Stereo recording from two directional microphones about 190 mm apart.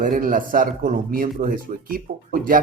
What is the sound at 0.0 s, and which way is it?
Speech, 45° right (ahead or behind).